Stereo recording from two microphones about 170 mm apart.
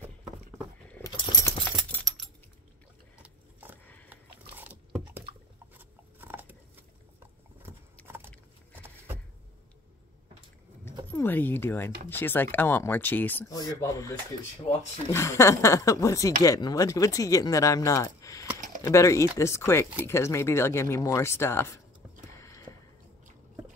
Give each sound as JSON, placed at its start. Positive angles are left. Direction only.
{"t": 1.0, "sound": "keys jangling", "side_deg": 20}
{"t": 1.9, "sound": "keys jangling", "side_deg": 5}
{"t": 3.2, "sound": "a sound", "side_deg": -10}
{"t": 4.1, "sound": "biting", "side_deg": -10}
{"t": 5.8, "sound": "a sound", "side_deg": -10}
{"t": 11.1, "sound": "speech", "side_deg": 10}
{"t": 15.1, "sound": "speech", "side_deg": 15}